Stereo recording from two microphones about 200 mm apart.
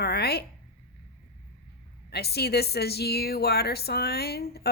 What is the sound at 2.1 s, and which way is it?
A woman's voice, 55° left (ahead or behind).